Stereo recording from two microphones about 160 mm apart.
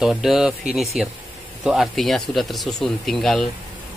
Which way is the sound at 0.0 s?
Centre (ahead or behind).